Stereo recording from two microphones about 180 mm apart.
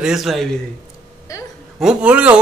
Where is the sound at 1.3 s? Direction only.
20° left (ahead or behind).